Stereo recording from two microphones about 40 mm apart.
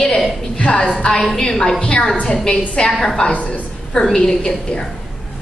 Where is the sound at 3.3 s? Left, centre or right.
Left.